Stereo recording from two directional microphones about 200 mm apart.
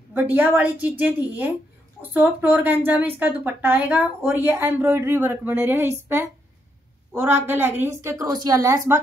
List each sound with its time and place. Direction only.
0.1 s speech: 10° right (ahead or behind)